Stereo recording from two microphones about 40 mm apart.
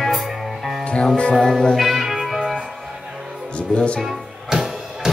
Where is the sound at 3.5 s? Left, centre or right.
Left.